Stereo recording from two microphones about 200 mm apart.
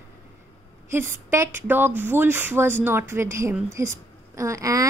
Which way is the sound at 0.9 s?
10° right (ahead or behind).